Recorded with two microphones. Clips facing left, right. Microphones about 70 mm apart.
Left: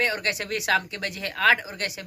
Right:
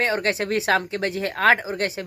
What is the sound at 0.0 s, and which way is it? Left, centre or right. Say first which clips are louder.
Speech: right 4 dB; right.